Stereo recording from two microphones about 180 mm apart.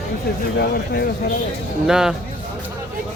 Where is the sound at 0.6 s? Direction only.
60° left (ahead or behind).